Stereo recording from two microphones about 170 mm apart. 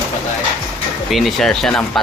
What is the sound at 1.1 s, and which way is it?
Speech, centre (ahead or behind).